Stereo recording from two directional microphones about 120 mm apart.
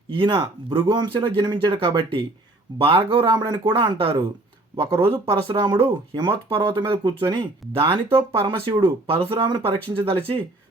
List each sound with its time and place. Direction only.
0.1 s speech: 45° right (ahead or behind)